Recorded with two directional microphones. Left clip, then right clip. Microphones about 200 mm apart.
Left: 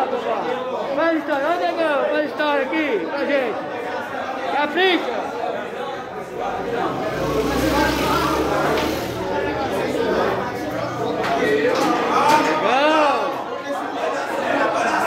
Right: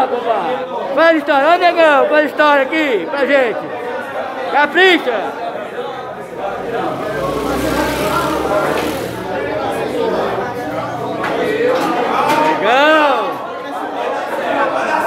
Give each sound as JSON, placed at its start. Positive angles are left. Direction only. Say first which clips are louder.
{"t": 0.9, "sound": "speech", "louder": "right 10 dB", "side_deg": -55}
{"t": 4.6, "sound": "speech", "louder": "right 8 dB", "side_deg": -35}
{"t": 12.6, "sound": "a sound", "louder": "right 6 dB", "side_deg": -40}